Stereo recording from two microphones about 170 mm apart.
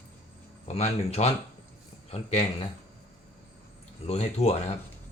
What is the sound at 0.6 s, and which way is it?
Speech, 40° left (ahead or behind).